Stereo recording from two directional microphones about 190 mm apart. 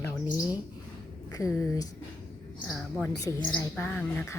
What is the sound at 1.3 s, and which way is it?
Speech, 15° left (ahead or behind).